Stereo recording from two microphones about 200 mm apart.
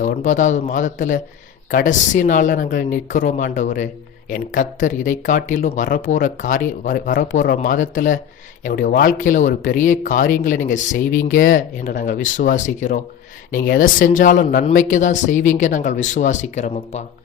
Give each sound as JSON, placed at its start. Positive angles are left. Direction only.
{"t": 0.0, "sound": "speech", "side_deg": 40}